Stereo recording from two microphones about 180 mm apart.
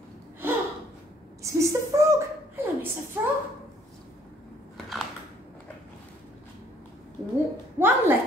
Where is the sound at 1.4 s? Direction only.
15° right (ahead or behind).